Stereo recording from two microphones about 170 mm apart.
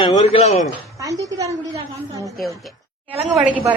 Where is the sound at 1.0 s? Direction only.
20° right (ahead or behind).